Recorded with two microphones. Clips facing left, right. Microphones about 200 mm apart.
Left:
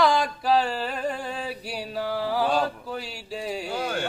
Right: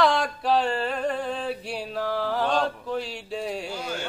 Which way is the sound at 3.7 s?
55° left (ahead or behind).